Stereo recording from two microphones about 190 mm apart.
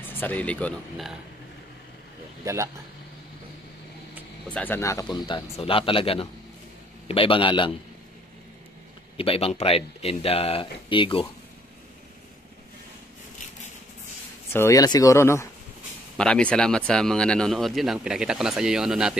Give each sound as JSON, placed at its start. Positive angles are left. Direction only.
{"t": 0.0, "sound": "speech", "side_deg": 10}
{"t": 2.4, "sound": "speech", "side_deg": -15}
{"t": 4.6, "sound": "speech", "side_deg": 10}
{"t": 9.1, "sound": "speech", "side_deg": 30}
{"t": 14.5, "sound": "speech", "side_deg": 15}